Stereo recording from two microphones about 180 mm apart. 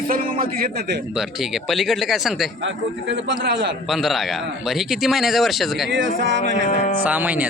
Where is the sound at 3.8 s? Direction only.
Centre (ahead or behind).